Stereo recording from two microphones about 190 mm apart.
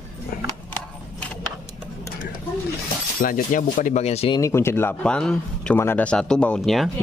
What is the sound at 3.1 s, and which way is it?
Speech, 45° left (ahead or behind).